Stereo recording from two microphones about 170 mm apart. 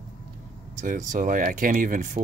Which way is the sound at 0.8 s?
50° right (ahead or behind).